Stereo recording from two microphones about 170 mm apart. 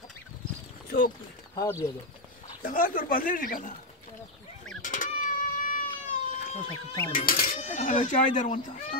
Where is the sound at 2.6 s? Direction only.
55° left (ahead or behind).